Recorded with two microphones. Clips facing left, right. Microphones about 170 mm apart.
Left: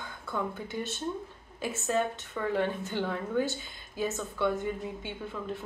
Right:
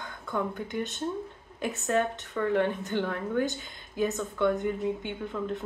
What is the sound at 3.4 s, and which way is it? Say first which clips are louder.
Speech: right 3 dB; 15° right (ahead or behind).